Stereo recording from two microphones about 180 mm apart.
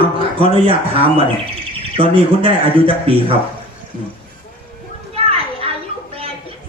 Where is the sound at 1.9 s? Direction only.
30° right (ahead or behind).